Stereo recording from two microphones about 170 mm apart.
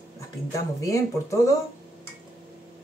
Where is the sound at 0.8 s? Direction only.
20° left (ahead or behind).